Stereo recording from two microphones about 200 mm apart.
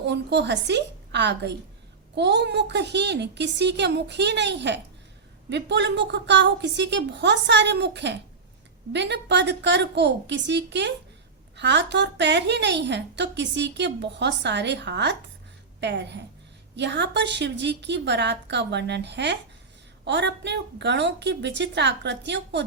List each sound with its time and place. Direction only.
0.0 s a woman's voice: 60° right (ahead or behind)